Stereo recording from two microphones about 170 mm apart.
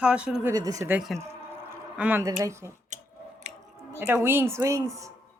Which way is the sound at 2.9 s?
45° right (ahead or behind).